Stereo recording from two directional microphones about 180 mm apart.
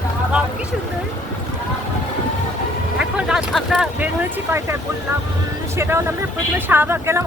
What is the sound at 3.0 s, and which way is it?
Speech, 5° right (ahead or behind).